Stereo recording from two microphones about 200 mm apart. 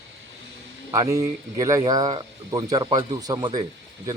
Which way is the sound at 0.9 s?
15° right (ahead or behind).